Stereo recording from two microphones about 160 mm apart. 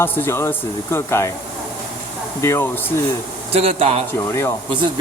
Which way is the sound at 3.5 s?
35° right (ahead or behind).